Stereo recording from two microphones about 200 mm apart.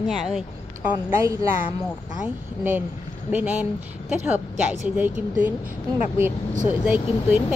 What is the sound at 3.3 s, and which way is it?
A woman's voice, 10° right (ahead or behind).